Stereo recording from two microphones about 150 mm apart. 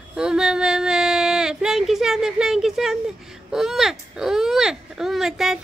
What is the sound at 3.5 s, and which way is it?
Speech, centre (ahead or behind).